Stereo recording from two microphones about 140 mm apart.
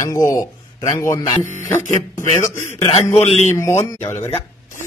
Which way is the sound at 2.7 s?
50° left (ahead or behind).